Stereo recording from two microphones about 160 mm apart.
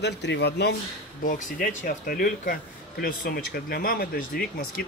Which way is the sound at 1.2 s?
60° left (ahead or behind).